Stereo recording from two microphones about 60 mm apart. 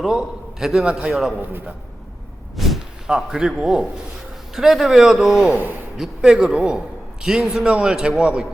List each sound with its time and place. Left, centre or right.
0.0 s a man's voice: centre
1.4 s a man's voice: right
2.6 s a sound: centre
3.1 s a man's voice: centre
5.5 s speech: right
6.0 s a man's voice: centre